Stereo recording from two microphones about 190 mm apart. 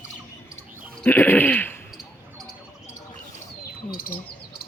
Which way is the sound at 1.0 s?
10° left (ahead or behind).